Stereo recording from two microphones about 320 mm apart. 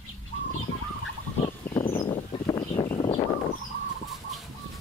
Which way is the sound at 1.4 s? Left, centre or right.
Centre.